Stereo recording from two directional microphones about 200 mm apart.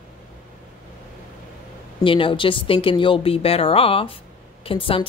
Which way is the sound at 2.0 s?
25° left (ahead or behind).